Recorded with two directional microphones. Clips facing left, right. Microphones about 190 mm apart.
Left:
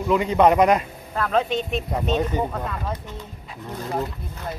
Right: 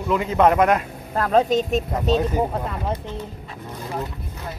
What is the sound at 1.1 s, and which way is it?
Speech, 40° right (ahead or behind).